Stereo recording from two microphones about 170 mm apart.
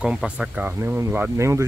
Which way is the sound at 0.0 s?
5° right (ahead or behind).